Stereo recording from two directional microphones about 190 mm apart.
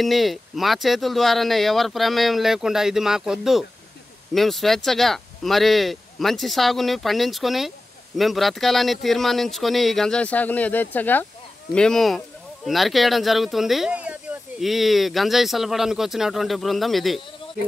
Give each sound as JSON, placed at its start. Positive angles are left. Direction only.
{"t": 0.0, "sound": "speech", "side_deg": 0}